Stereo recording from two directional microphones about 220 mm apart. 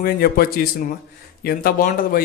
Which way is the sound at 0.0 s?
45° left (ahead or behind).